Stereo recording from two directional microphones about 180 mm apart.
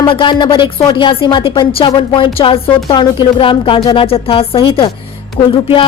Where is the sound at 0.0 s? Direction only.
25° left (ahead or behind).